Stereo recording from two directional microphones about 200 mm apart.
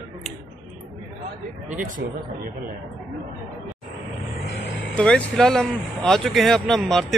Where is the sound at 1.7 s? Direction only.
40° right (ahead or behind).